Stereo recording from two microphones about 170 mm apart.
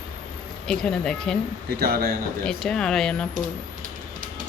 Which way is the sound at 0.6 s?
5° left (ahead or behind).